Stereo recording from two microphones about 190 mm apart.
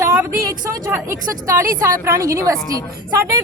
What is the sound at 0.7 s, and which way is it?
Speech, 10° right (ahead or behind).